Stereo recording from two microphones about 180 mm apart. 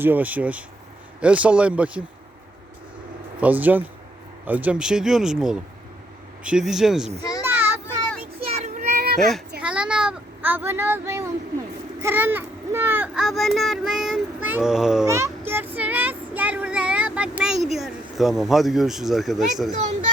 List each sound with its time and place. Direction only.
0.0 s a man's voice: 10° right (ahead or behind)
3.4 s a man's voice: 10° right (ahead or behind)
7.2 s a child's voice: 20° left (ahead or behind)
8.4 s child singing: 40° right (ahead or behind)
9.6 s a child's voice: 5° right (ahead or behind)
15.0 s child singing: 15° right (ahead or behind)